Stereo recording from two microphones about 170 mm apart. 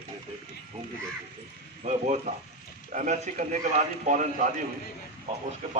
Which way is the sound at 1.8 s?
45° right (ahead or behind).